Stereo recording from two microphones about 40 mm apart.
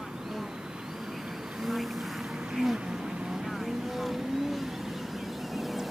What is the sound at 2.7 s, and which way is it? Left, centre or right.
Vehicle, centre.